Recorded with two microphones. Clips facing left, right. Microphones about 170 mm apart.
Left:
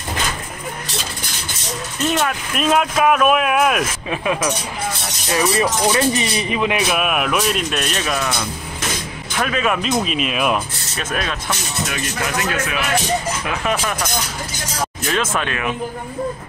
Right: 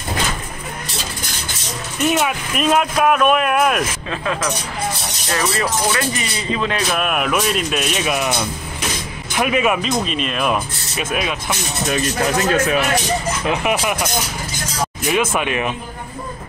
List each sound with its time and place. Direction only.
2.0 s speech: 5° right (ahead or behind)
4.1 s speech: 15° left (ahead or behind)
6.9 s speech: 5° left (ahead or behind)
9.4 s speech: 10° right (ahead or behind)
9.8 s speech: 5° left (ahead or behind)
11.0 s speech: 10° right (ahead or behind)
11.9 s speech: 35° right (ahead or behind)
13.5 s speech: 15° right (ahead or behind)
15.0 s speech: 10° right (ahead or behind)